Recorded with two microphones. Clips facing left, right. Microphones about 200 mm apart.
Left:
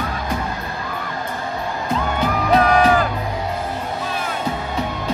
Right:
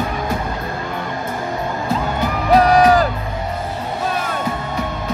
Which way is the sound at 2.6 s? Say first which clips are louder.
Right 4 dB; 35° right (ahead or behind).